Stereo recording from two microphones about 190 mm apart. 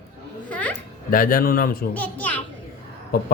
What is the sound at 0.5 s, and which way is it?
Music, 5° left (ahead or behind).